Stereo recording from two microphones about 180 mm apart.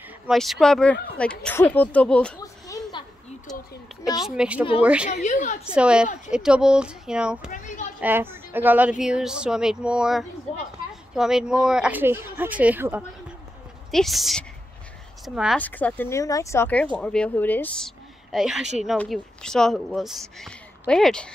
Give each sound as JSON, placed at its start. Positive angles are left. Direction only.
{"t": 0.3, "sound": "speech", "side_deg": 0}
{"t": 3.9, "sound": "speech", "side_deg": 0}
{"t": 5.2, "sound": "a woman's voice", "side_deg": 45}
{"t": 5.7, "sound": "speech", "side_deg": -5}
{"t": 7.5, "sound": "a child's voice", "side_deg": 45}
{"t": 8.0, "sound": "speech", "side_deg": -10}
{"t": 15.6, "sound": "speech", "side_deg": 10}